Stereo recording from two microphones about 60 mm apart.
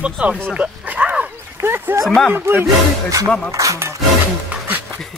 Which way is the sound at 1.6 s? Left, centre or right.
Right.